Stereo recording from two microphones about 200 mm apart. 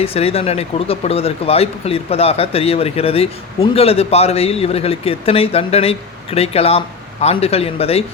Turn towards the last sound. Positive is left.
turn(degrees=30)  # may be behind; listen again after turning